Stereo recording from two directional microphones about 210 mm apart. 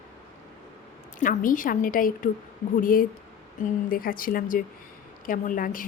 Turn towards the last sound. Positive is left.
turn(degrees=40)  # may be behind; listen again after turning